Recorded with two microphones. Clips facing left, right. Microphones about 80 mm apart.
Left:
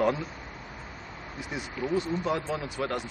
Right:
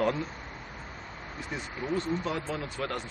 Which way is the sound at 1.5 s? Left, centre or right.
Centre.